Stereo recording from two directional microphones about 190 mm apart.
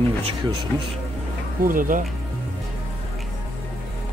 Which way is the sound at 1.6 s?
45° right (ahead or behind).